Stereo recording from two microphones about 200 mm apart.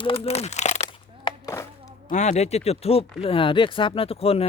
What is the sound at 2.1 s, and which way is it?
Speech, 35° left (ahead or behind).